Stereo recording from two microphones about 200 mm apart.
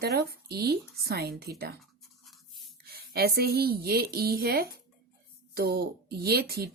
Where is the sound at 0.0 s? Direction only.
50° right (ahead or behind).